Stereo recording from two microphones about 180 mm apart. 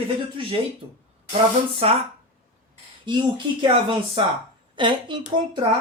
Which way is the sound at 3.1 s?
25° right (ahead or behind).